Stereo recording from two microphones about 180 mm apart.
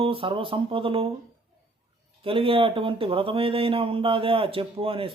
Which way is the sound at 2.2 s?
30° right (ahead or behind).